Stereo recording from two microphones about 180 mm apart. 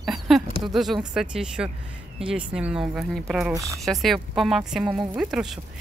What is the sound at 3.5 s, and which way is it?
Speech, 20° right (ahead or behind).